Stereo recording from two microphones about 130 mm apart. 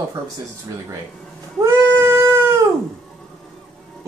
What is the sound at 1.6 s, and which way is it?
Cat, 20° right (ahead or behind).